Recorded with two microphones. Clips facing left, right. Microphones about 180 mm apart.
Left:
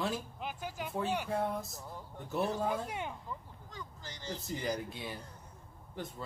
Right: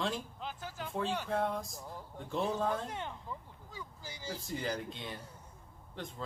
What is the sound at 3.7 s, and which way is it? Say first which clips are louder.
Speech: even; 10° right (ahead or behind).